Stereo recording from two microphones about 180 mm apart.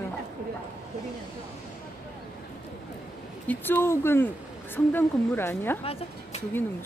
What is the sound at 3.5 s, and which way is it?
A woman's voice, 10° left (ahead or behind).